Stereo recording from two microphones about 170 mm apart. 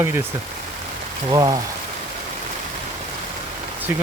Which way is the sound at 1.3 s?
20° right (ahead or behind).